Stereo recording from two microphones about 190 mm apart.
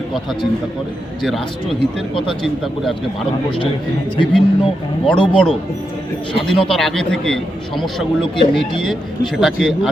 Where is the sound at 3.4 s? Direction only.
25° left (ahead or behind).